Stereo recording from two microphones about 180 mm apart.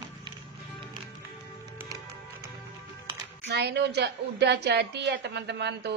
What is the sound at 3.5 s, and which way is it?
A woman's voice, 65° right (ahead or behind).